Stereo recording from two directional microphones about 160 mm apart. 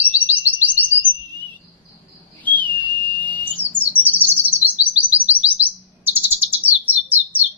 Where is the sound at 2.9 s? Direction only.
10° left (ahead or behind).